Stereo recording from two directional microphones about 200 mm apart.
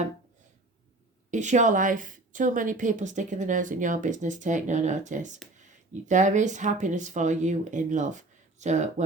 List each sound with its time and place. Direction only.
1.3 s a woman's voice: 35° right (ahead or behind)